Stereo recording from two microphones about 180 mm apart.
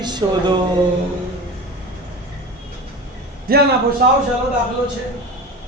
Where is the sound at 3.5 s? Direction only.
55° right (ahead or behind).